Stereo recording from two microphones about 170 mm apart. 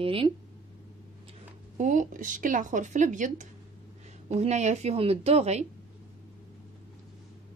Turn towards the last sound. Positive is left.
turn(degrees=-40)  # may be behind; listen again after turning